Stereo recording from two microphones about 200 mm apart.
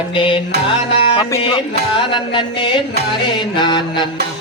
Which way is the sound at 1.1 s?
25° left (ahead or behind).